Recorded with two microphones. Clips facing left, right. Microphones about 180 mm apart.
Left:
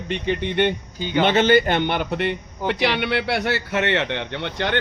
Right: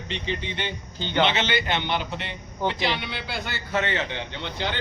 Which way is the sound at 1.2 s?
50° left (ahead or behind).